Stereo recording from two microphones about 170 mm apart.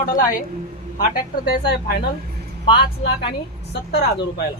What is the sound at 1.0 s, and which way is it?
A woman's voice, 65° left (ahead or behind).